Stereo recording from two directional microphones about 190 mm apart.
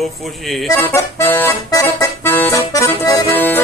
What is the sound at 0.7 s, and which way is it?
Accordion, 10° left (ahead or behind).